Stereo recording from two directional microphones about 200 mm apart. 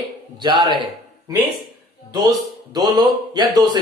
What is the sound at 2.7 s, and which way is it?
Speech, 20° right (ahead or behind).